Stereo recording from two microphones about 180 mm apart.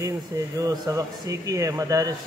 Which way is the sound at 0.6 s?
20° right (ahead or behind).